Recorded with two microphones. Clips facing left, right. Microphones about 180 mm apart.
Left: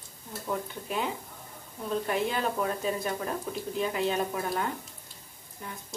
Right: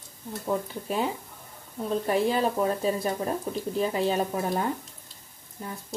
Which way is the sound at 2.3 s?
35° right (ahead or behind).